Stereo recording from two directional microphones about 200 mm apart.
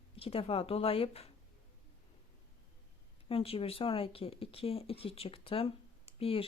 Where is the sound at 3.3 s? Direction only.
30° left (ahead or behind).